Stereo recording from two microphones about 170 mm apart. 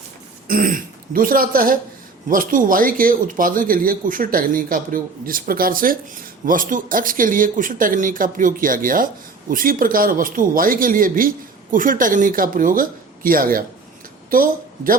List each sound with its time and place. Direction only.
0.4 s speech: 55° right (ahead or behind)